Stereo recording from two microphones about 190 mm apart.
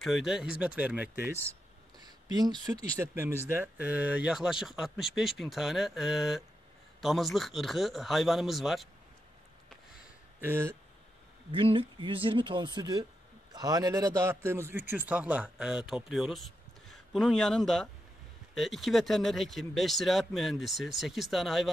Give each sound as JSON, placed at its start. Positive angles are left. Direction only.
{"t": 0.0, "sound": "speech", "side_deg": 0}
{"t": 2.0, "sound": "speech", "side_deg": -20}
{"t": 10.4, "sound": "a man's voice", "side_deg": -15}
{"t": 11.5, "sound": "a man's voice", "side_deg": -30}